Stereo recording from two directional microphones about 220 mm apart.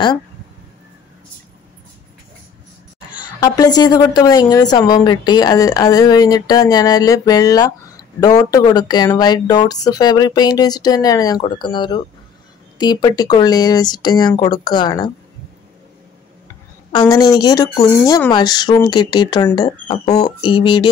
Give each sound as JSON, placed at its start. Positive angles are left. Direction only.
{"t": 3.3, "sound": "a woman's voice", "side_deg": 15}
{"t": 16.9, "sound": "a woman's voice", "side_deg": 20}